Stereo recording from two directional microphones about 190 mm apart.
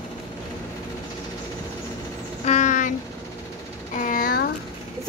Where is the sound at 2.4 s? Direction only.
40° left (ahead or behind).